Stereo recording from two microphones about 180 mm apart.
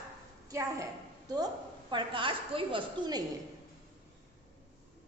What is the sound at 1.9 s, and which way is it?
A woman's voice, 25° right (ahead or behind).